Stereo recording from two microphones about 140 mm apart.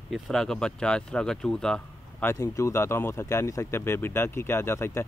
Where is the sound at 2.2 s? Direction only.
25° left (ahead or behind).